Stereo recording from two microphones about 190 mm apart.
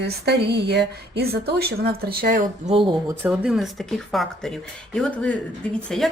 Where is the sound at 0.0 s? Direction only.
60° right (ahead or behind).